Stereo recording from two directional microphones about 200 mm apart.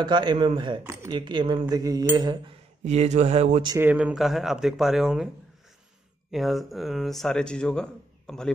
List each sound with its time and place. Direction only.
0.0 s speech: 20° right (ahead or behind)
2.8 s speech: 35° right (ahead or behind)
3.6 s speech: 10° right (ahead or behind)
6.3 s speech: centre (ahead or behind)